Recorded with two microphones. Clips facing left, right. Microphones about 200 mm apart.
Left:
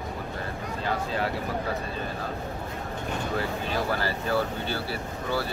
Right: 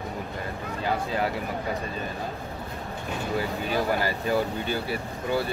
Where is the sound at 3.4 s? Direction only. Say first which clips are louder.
Right 4 dB; 15° right (ahead or behind).